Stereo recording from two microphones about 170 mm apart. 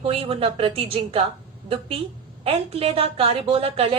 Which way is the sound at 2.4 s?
35° right (ahead or behind).